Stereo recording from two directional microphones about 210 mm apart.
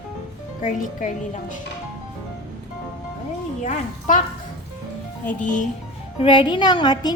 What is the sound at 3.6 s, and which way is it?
Speech, 35° left (ahead or behind).